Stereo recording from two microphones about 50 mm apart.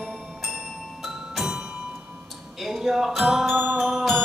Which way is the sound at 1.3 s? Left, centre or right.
Centre.